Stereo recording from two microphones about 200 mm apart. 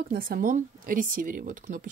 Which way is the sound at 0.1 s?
45° right (ahead or behind).